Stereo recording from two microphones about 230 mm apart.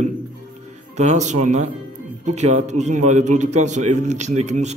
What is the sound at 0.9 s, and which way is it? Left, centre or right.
A man's voice, right.